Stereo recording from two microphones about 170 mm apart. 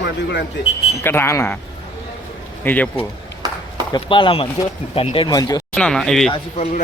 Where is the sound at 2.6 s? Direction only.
10° left (ahead or behind).